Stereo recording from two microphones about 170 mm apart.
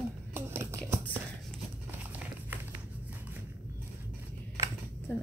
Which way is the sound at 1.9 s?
10° right (ahead or behind).